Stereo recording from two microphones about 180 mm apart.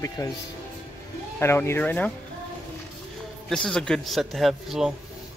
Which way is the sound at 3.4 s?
Centre (ahead or behind).